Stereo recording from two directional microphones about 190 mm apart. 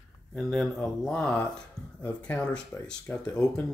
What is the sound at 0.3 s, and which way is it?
Speech, 5° left (ahead or behind).